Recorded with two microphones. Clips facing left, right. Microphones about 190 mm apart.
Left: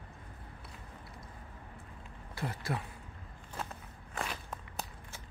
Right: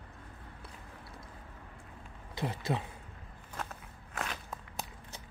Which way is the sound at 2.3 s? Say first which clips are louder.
Right 3 dB; 20° right (ahead or behind).